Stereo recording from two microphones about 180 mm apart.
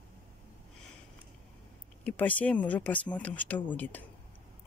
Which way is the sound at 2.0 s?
10° left (ahead or behind).